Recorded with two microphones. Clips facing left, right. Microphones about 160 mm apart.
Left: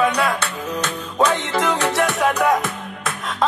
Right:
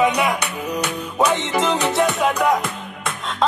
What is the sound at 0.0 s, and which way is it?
Music, 20° right (ahead or behind).